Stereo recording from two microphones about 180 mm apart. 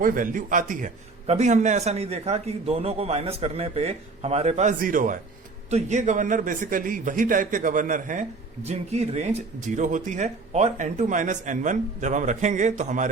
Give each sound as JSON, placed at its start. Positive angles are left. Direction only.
{"t": 0.0, "sound": "a man's voice", "side_deg": -50}